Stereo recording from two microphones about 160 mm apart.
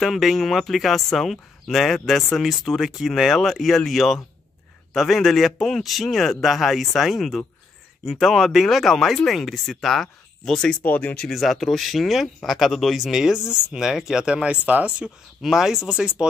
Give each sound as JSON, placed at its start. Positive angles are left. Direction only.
{"t": 0.0, "sound": "speech", "side_deg": 0}